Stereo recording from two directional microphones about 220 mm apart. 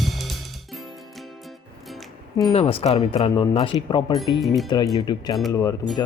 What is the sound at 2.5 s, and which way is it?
Speech, 25° left (ahead or behind).